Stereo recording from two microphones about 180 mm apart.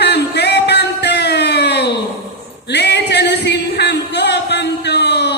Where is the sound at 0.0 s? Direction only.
70° left (ahead or behind).